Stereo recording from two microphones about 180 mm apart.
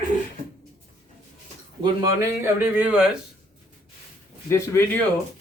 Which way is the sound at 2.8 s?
5° right (ahead or behind).